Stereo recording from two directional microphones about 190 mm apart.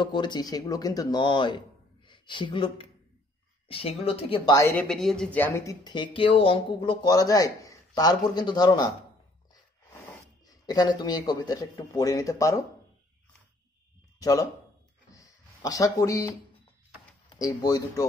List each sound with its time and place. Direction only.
0.0 s speech: 25° left (ahead or behind)
4.6 s speech: 10° left (ahead or behind)
14.2 s speech: 20° left (ahead or behind)
15.0 s a sound: 15° left (ahead or behind)
17.6 s speech: 20° left (ahead or behind)